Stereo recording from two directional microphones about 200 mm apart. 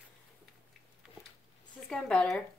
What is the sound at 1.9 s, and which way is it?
Speech, 5° left (ahead or behind).